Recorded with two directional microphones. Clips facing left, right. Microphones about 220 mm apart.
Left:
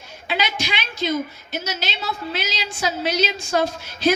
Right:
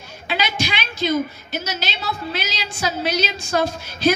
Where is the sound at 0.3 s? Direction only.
20° left (ahead or behind).